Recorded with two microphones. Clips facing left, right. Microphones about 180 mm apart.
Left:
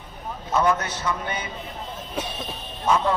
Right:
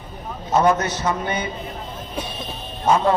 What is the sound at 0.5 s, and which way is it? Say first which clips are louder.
Speech: right 4 dB; 40° right (ahead or behind).